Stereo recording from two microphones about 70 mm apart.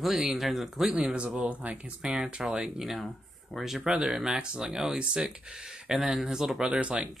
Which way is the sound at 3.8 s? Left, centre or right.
Centre.